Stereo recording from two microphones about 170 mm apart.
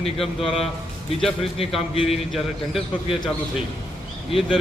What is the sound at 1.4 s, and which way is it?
Speech, 35° left (ahead or behind).